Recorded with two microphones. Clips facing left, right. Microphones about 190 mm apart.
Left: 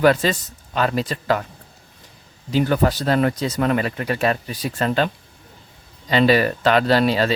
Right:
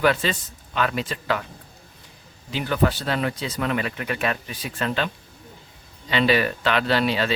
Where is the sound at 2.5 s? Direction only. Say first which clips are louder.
Left 4 dB; 40° left (ahead or behind).